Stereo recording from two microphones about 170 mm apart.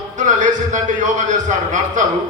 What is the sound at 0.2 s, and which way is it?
A man's voice, 45° right (ahead or behind).